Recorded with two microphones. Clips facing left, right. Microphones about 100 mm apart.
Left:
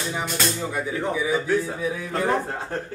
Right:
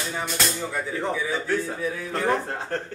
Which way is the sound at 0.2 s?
Centre (ahead or behind).